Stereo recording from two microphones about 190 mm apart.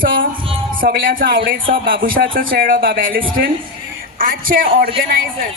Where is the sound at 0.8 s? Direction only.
50° right (ahead or behind).